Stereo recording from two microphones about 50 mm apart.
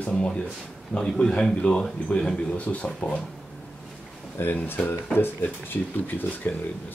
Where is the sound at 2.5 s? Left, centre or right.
Left.